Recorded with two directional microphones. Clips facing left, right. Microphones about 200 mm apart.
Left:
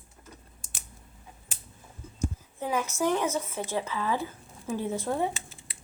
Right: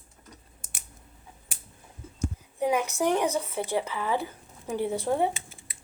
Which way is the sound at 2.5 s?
15° right (ahead or behind).